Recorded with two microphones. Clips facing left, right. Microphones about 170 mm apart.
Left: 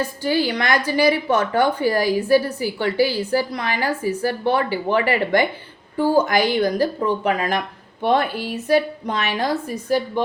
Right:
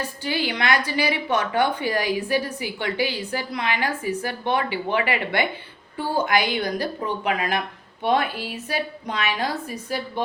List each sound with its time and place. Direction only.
0.2 s a woman's voice: 40° left (ahead or behind)